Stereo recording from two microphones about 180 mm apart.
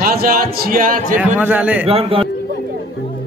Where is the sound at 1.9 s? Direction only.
30° right (ahead or behind).